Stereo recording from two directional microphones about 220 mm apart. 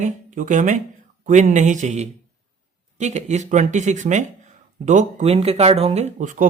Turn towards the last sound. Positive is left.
turn(degrees=-35)  # may be behind; listen again after turning